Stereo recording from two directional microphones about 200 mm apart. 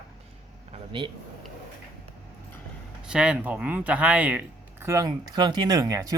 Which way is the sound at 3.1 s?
5° right (ahead or behind).